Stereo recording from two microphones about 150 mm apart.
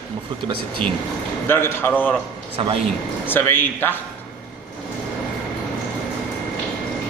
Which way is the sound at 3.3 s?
15° left (ahead or behind).